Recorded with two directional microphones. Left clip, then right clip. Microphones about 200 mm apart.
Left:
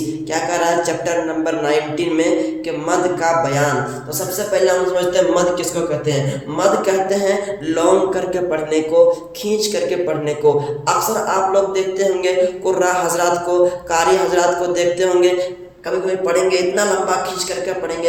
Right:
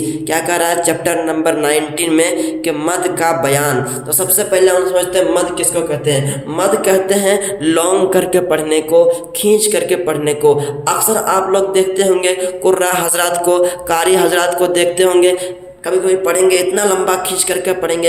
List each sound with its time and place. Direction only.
0.3 s a man's voice: 40° right (ahead or behind)